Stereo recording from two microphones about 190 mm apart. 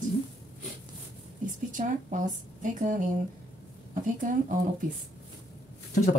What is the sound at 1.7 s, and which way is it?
Speech, 40° right (ahead or behind).